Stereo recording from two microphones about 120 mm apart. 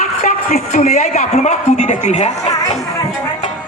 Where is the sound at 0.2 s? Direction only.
90° left.